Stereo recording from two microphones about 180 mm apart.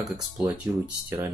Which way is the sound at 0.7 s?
25° right (ahead or behind).